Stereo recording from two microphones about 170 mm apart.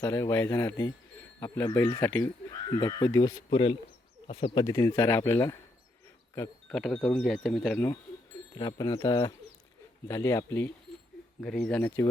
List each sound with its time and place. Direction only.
0.0 s speech: 15° left (ahead or behind)
2.5 s speech: 25° left (ahead or behind)
4.6 s speech: 20° left (ahead or behind)
6.7 s speech: 5° left (ahead or behind)
8.5 s speech: 25° left (ahead or behind)
11.3 s speech: 5° left (ahead or behind)